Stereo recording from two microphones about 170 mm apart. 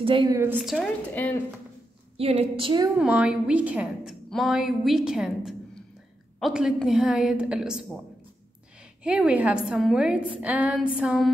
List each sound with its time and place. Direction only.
0.0 s a woman's voice: 30° right (ahead or behind)
0.3 s a woman's voice: 15° right (ahead or behind)
0.6 s a woman's voice: 5° left (ahead or behind)
2.1 s a woman's voice: 35° right (ahead or behind)
3.0 s a woman's voice: 5° right (ahead or behind)
9.0 s a woman's voice: 5° right (ahead or behind)